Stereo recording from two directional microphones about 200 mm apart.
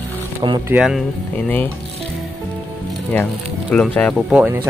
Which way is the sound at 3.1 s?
5° left (ahead or behind).